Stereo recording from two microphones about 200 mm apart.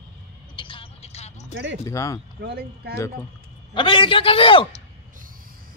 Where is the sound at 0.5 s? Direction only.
25° left (ahead or behind).